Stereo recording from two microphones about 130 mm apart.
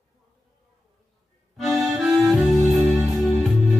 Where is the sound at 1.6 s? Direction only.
Centre (ahead or behind).